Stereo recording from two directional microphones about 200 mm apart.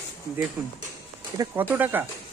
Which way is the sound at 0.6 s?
15° right (ahead or behind).